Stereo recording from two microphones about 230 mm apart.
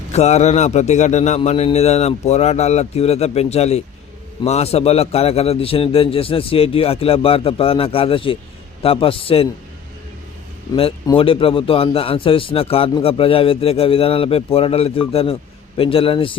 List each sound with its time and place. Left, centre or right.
0.1 s a man's voice: left
10.8 s a man's voice: left